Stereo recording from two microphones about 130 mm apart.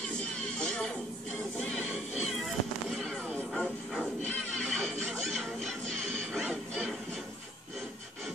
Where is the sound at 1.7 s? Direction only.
Centre (ahead or behind).